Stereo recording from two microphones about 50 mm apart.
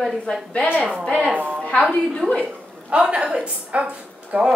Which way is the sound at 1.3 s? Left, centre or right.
Right.